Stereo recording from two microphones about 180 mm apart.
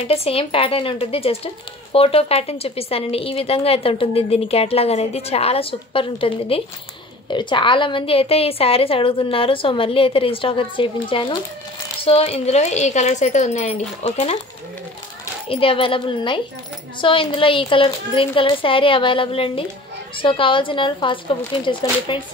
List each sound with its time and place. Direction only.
0.1 s a woman's voice: 35° left (ahead or behind)
15.4 s a woman's voice: 30° left (ahead or behind)